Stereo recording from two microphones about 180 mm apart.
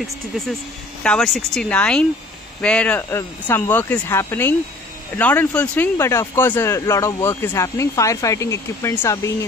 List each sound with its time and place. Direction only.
1.0 s speech: 5° left (ahead or behind)